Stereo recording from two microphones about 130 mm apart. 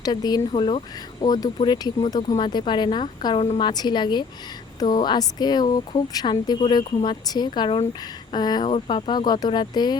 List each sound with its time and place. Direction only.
0.0 s speech: 30° left (ahead or behind)
0.5 s speech: 45° left (ahead or behind)
1.2 s speech: 30° left (ahead or behind)